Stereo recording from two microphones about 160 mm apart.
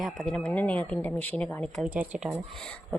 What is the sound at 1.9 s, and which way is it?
Speech, 10° right (ahead or behind).